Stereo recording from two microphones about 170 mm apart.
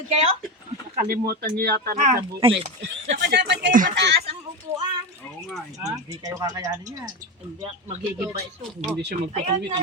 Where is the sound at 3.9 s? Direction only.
90° right.